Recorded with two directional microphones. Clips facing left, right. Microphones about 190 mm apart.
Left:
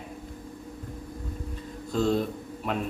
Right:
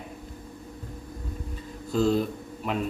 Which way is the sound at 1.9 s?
5° right (ahead or behind).